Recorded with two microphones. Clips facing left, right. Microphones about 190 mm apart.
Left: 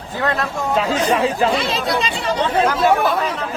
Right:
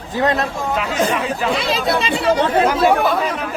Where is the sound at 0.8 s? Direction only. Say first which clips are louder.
Left 3 dB; 30° left (ahead or behind).